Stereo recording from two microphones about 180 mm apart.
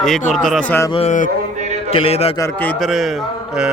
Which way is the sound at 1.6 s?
40° right (ahead or behind).